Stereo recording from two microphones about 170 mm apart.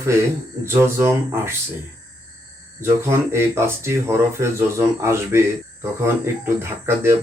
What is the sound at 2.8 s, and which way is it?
Speech, 15° right (ahead or behind).